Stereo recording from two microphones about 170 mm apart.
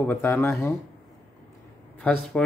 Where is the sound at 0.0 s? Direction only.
10° left (ahead or behind).